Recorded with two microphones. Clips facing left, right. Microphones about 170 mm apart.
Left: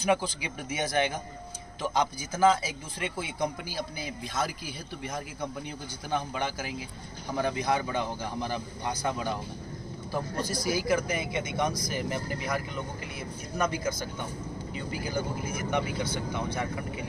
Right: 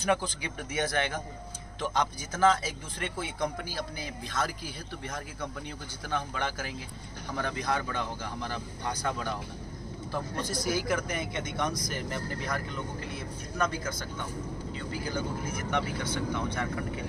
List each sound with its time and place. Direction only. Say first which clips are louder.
0.0 s speech: left 2 dB; 10° left (ahead or behind)
10.6 s speech: left 3 dB; 5° left (ahead or behind)